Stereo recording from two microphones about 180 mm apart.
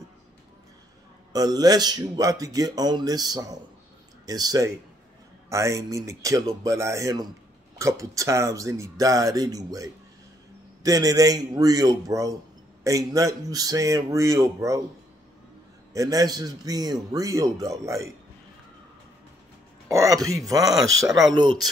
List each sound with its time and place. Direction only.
1.3 s a man's voice: 20° right (ahead or behind)
15.9 s a man's voice: 20° right (ahead or behind)
19.9 s a man's voice: 20° right (ahead or behind)